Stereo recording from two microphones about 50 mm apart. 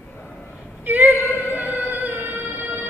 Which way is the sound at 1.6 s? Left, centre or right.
Right.